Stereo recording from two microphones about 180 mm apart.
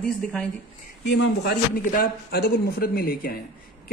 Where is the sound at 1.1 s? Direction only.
75° left (ahead or behind).